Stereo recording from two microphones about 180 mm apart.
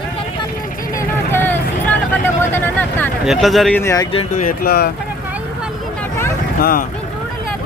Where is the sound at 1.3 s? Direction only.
10° left (ahead or behind).